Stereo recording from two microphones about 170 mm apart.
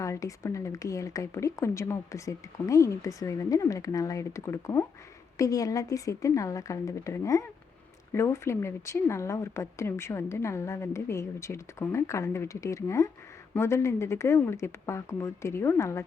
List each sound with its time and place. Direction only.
0.0 s speech: 20° left (ahead or behind)